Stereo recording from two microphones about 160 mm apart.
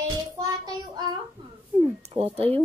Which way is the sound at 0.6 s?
25° right (ahead or behind).